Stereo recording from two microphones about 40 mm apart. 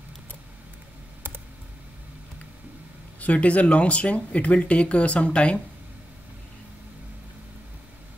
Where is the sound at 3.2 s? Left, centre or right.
Left.